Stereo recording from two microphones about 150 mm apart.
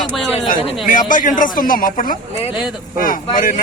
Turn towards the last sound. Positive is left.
turn(degrees=60)  # may be behind; listen again after turning